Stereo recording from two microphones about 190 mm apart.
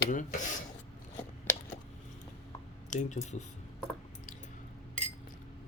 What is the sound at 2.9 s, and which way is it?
Speech, 40° left (ahead or behind).